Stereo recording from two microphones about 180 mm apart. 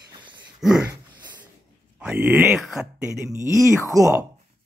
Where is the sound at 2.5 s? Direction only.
Centre (ahead or behind).